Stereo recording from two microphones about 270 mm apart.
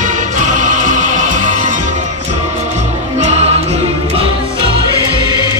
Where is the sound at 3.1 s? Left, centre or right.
Right.